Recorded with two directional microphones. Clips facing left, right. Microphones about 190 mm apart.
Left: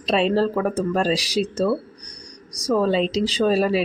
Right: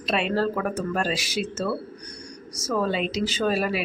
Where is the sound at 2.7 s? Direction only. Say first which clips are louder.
Left 5 dB; 30° left (ahead or behind).